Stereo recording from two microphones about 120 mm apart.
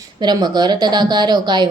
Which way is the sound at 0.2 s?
35° right (ahead or behind).